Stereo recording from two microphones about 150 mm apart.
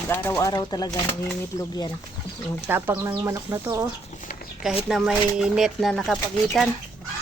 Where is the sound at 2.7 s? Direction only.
15° right (ahead or behind).